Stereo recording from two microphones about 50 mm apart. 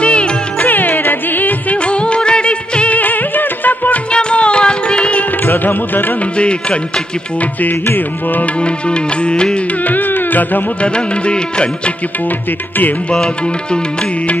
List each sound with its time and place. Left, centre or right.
0.0 s music: left
0.7 s music: left
1.8 s music: left
3.0 s music: left
4.1 s music: left
5.4 s music: left
6.3 s music: left
7.8 s music: left
8.5 s music: left
9.8 s music: left
10.8 s music: left
13.1 s music: centre